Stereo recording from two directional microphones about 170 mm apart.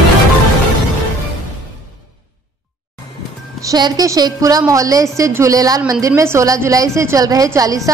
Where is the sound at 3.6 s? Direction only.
20° right (ahead or behind).